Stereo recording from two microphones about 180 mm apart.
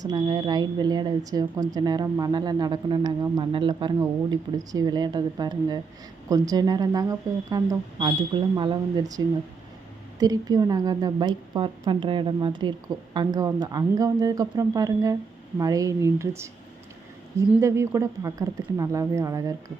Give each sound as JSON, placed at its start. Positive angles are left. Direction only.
{"t": 0.0, "sound": "a woman's voice", "side_deg": -20}
{"t": 17.5, "sound": "speech", "side_deg": -15}